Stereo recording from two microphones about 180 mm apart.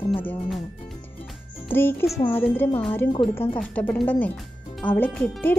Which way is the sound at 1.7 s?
10° left (ahead or behind).